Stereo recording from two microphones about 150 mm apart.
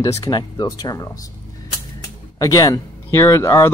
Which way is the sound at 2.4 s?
25° left (ahead or behind).